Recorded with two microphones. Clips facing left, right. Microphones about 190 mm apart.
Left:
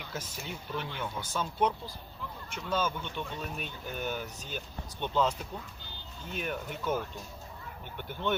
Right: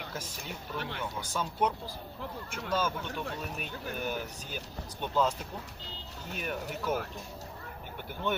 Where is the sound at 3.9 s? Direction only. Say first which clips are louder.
Even; 10° right (ahead or behind).